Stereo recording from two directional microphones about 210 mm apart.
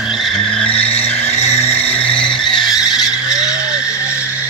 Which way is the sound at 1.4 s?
30° left (ahead or behind).